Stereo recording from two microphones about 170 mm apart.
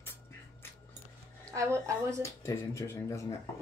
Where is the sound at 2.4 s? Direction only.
15° left (ahead or behind).